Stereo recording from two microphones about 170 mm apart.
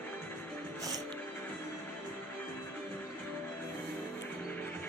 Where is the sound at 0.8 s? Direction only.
20° right (ahead or behind).